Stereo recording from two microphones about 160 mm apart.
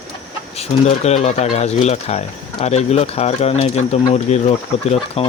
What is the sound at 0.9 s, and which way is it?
Speech, 40° left (ahead or behind).